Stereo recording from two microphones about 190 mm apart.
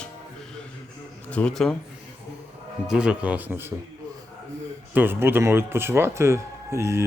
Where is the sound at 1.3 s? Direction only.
5° left (ahead or behind).